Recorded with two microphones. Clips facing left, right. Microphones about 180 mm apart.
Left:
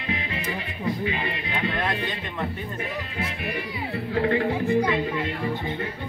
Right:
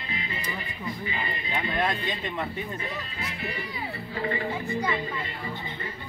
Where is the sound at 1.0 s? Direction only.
75° left (ahead or behind).